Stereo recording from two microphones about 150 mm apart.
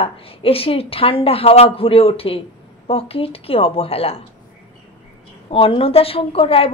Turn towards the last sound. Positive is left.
turn(degrees=40)  # may be behind; listen again after turning